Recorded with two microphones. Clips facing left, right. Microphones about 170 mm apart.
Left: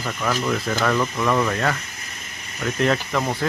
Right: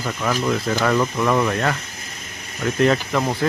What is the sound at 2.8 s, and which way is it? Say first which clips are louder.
Speech: right 3 dB; 5° right (ahead or behind).